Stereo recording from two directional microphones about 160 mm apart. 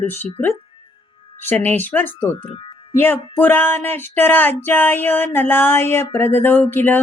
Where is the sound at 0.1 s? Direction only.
10° left (ahead or behind).